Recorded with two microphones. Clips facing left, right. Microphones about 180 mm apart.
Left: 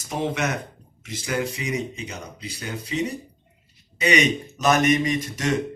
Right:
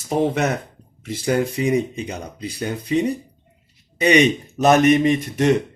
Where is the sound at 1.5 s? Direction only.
55° right (ahead or behind).